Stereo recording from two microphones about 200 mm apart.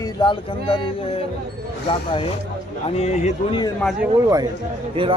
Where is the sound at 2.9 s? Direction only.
35° left (ahead or behind).